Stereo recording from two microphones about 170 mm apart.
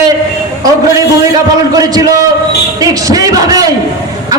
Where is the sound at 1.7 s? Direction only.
20° right (ahead or behind).